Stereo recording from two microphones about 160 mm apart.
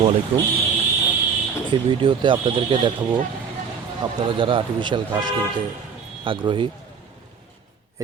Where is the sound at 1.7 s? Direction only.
30° right (ahead or behind).